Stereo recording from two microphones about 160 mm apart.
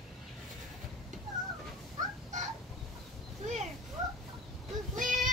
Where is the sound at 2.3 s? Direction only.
50° right (ahead or behind).